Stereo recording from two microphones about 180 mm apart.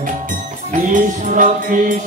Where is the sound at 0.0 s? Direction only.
45° right (ahead or behind).